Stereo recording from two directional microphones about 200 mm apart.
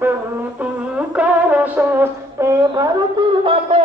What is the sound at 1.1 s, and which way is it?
Music, 5° right (ahead or behind).